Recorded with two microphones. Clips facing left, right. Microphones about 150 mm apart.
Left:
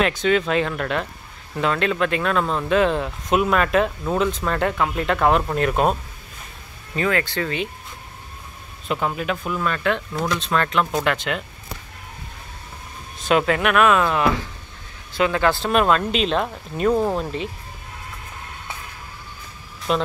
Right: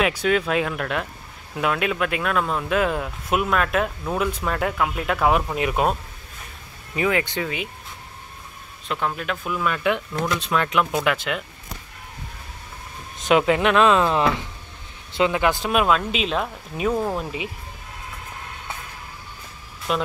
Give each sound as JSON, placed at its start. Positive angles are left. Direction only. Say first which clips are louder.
{"t": 0.0, "sound": "speech", "louder": "left 1 dB", "side_deg": -5}
{"t": 7.0, "sound": "speech", "louder": "even", "side_deg": -15}
{"t": 8.8, "sound": "speech", "louder": "left 3 dB", "side_deg": 5}
{"t": 10.4, "sound": "speech", "louder": "even", "side_deg": -10}
{"t": 13.2, "sound": "speech", "louder": "right 1 dB", "side_deg": -15}
{"t": 16.9, "sound": "speech", "louder": "left 4 dB", "side_deg": 10}
{"t": 17.2, "sound": "speech", "louder": "left 3 dB", "side_deg": -10}
{"t": 19.9, "sound": "speech", "louder": "left 2 dB", "side_deg": 0}